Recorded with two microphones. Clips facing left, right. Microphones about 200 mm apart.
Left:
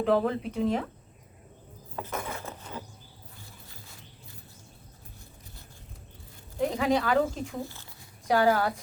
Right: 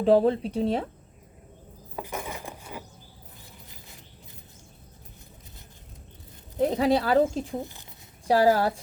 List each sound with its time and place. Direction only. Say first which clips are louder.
0.0 s speech: right 5 dB; 30° right (ahead or behind)
2.0 s patter: even; 15° right (ahead or behind)
3.4 s rodents: right 1 dB; 20° right (ahead or behind)
6.6 s speech: right 3 dB; 35° right (ahead or behind)
7.6 s speech: even; 15° right (ahead or behind)
8.3 s speech: right 3 dB; 30° right (ahead or behind)